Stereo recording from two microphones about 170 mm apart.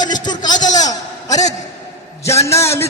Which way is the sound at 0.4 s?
25° left (ahead or behind).